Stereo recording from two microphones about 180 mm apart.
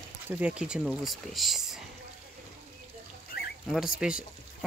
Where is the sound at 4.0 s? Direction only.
5° right (ahead or behind).